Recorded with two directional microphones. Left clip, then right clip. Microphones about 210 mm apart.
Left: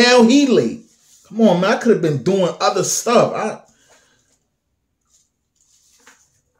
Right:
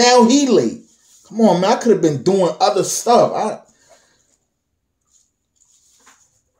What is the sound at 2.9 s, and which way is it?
Speech, 25° left (ahead or behind).